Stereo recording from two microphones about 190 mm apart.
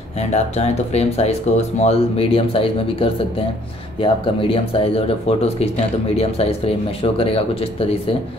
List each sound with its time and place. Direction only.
0.3 s speech: 35° left (ahead or behind)